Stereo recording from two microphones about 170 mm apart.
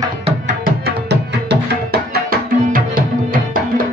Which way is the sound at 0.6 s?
75° right (ahead or behind).